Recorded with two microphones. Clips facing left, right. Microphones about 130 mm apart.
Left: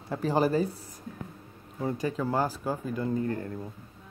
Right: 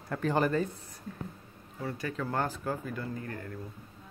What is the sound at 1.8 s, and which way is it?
Speech, 20° left (ahead or behind).